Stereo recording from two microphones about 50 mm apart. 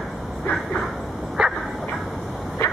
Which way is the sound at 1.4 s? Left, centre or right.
Centre.